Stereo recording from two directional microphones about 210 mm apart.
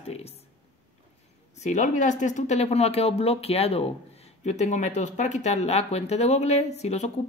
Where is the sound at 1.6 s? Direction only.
35° left (ahead or behind).